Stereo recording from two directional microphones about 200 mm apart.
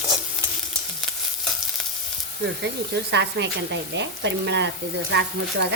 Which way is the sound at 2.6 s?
60° right (ahead or behind).